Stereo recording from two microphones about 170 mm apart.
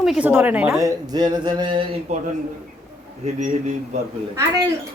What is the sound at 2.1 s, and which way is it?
Speech, 40° right (ahead or behind).